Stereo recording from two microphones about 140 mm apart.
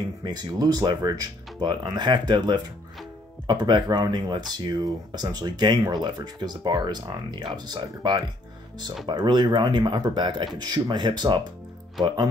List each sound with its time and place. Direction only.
0.2 s speech: 30° right (ahead or behind)